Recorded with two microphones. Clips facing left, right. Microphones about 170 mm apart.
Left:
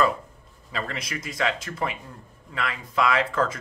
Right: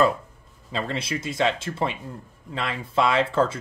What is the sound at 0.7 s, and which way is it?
Speech, 25° right (ahead or behind).